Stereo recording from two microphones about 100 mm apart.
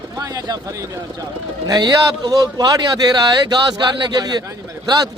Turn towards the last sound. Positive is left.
turn(degrees=-35)  # may be behind; listen again after turning